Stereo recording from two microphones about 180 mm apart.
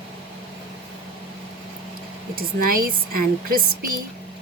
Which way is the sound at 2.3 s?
55° right (ahead or behind).